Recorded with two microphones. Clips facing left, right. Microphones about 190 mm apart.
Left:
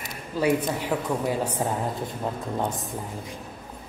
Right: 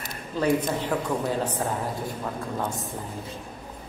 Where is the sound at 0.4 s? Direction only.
10° left (ahead or behind).